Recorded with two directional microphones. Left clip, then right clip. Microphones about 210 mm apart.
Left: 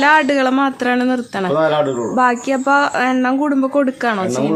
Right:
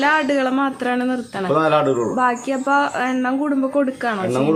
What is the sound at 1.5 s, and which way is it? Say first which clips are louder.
Speech: left 1 dB; 15° right (ahead or behind).